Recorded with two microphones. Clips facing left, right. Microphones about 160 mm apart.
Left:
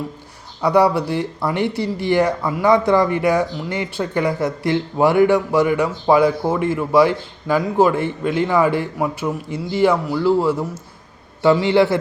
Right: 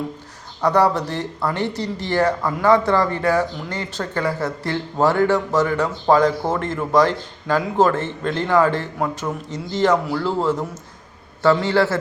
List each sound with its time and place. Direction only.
0.6 s speech: 10° left (ahead or behind)